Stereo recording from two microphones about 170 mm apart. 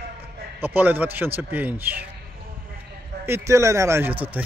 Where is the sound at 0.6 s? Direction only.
10° right (ahead or behind).